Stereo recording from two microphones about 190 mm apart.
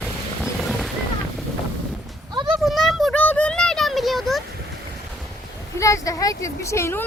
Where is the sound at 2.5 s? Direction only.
Centre (ahead or behind).